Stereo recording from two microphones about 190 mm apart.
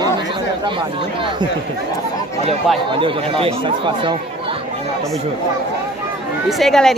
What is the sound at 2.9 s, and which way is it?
Speech, 25° right (ahead or behind).